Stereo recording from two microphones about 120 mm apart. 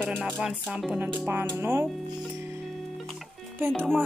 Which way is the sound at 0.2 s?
5° right (ahead or behind).